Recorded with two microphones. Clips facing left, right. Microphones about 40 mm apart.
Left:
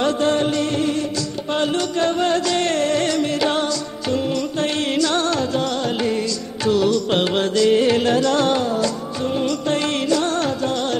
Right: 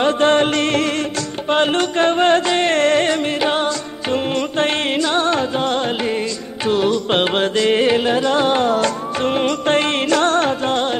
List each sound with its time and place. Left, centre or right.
0.2 s music: right
1.5 s music: right
7.9 s music: right
8.6 s music: right
10.0 s music: right